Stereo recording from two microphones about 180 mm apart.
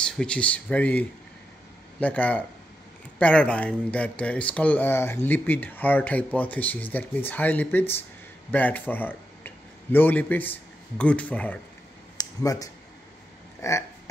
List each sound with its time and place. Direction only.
0.0 s speech: 5° left (ahead or behind)
12.2 s a sound: 20° left (ahead or behind)
13.6 s burping: 15° left (ahead or behind)